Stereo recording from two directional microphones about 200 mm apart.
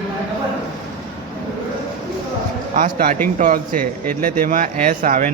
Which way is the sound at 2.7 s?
40° right (ahead or behind).